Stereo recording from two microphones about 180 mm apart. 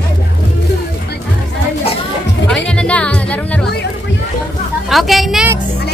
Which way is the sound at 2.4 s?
5° left (ahead or behind).